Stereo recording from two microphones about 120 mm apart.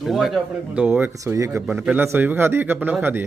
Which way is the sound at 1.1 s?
25° right (ahead or behind).